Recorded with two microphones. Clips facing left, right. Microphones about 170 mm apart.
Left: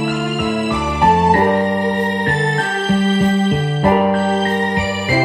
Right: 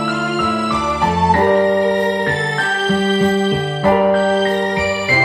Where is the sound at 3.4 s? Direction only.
50° left (ahead or behind).